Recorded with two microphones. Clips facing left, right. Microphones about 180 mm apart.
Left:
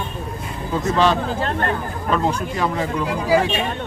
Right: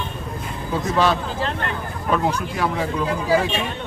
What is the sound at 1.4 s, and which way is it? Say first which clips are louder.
Speech: left 3 dB; 45° left (ahead or behind).